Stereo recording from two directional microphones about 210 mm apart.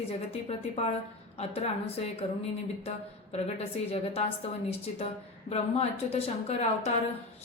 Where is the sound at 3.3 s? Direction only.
30° left (ahead or behind).